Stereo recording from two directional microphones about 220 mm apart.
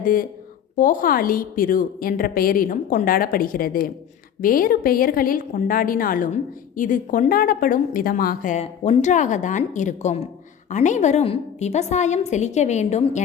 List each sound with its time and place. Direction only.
0.0 s a woman's voice: 40° left (ahead or behind)